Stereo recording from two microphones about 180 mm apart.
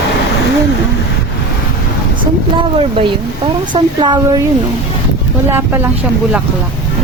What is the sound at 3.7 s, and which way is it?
Speech, 25° right (ahead or behind).